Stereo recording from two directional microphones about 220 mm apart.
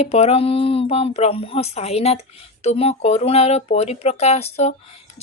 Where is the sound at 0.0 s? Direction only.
30° left (ahead or behind).